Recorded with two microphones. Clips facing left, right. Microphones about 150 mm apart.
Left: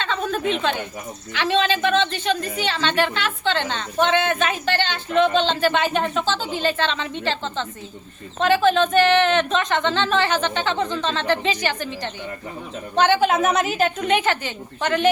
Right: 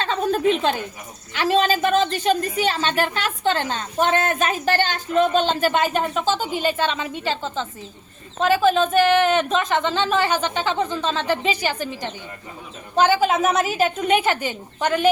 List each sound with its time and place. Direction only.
0.0 s a sound: 40° right (ahead or behind)
1.5 s a woman's voice: 40° right (ahead or behind)
5.9 s a woman's voice: 5° right (ahead or behind)
13.0 s a woman's voice: 5° right (ahead or behind)